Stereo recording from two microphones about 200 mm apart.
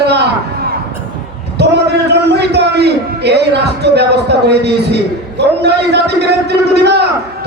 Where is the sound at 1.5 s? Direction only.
55° right (ahead or behind).